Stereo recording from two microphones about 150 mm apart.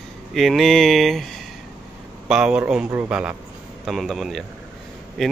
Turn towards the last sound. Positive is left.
turn(degrees=0)  # may be behind; listen again after turning